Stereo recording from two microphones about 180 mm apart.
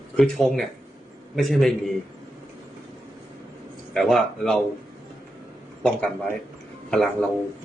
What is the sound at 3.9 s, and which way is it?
Speech, centre (ahead or behind).